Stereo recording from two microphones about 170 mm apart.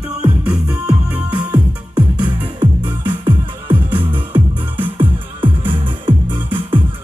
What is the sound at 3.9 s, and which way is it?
Music, 30° right (ahead or behind).